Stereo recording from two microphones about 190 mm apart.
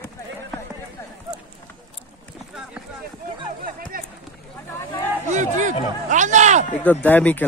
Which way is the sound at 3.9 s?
50° right (ahead or behind).